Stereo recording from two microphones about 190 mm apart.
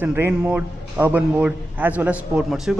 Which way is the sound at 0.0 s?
10° right (ahead or behind).